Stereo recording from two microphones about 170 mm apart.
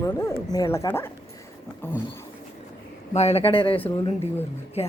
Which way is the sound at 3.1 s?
40° left (ahead or behind).